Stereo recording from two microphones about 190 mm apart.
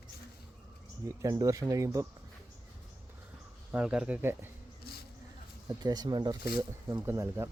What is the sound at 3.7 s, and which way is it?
Speech, 5° right (ahead or behind).